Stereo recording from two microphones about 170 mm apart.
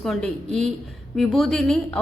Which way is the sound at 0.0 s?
5° left (ahead or behind).